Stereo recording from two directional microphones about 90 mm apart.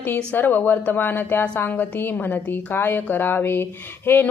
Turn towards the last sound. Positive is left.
turn(degrees=25)  # may be behind; listen again after turning